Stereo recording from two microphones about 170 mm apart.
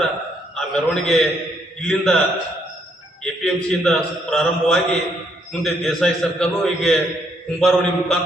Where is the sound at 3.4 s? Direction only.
5° left (ahead or behind).